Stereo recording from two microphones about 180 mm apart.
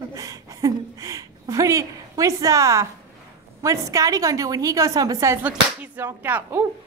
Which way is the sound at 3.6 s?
20° right (ahead or behind).